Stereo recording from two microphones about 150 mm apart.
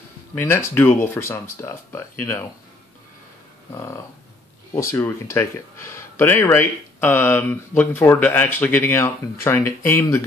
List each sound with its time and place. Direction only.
0.3 s speech: 15° left (ahead or behind)
3.7 s speech: 20° left (ahead or behind)